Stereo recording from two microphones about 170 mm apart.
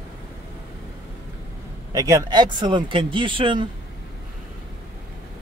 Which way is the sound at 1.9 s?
20° right (ahead or behind).